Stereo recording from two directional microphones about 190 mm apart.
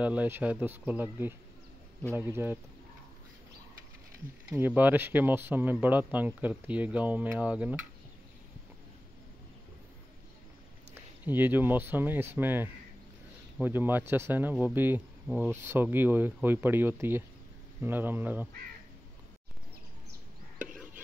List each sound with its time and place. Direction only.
0.0 s speech: 5° right (ahead or behind)
4.5 s speech: 10° right (ahead or behind)
11.2 s speech: 10° right (ahead or behind)
20.6 s chopping: 5° right (ahead or behind)